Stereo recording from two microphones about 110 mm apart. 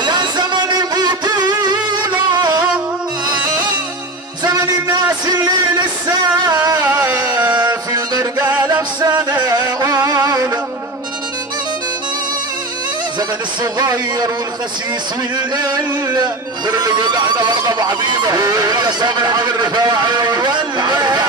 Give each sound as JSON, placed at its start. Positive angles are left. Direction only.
{"t": 0.0, "sound": "music", "side_deg": -40}
{"t": 4.5, "sound": "music", "side_deg": -35}
{"t": 8.4, "sound": "music", "side_deg": -15}
{"t": 8.6, "sound": "music", "side_deg": -35}
{"t": 13.7, "sound": "music", "side_deg": -35}
{"t": 15.3, "sound": "music", "side_deg": -40}